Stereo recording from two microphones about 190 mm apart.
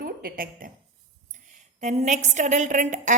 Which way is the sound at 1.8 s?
40° right (ahead or behind).